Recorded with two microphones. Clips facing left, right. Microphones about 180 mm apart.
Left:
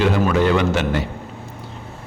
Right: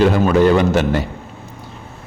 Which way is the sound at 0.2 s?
35° right (ahead or behind).